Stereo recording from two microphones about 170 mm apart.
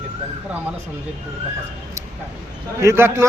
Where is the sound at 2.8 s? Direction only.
15° right (ahead or behind).